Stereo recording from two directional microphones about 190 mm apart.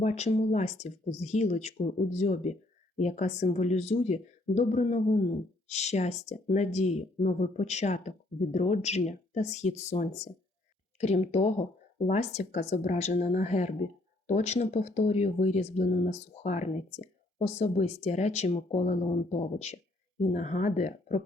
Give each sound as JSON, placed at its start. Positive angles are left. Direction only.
{"t": 0.0, "sound": "speech", "side_deg": 35}